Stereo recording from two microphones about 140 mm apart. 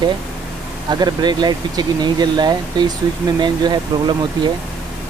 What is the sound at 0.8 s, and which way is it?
Speech, 30° right (ahead or behind).